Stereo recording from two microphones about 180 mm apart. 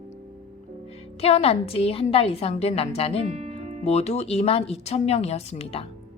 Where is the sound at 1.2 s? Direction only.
35° left (ahead or behind).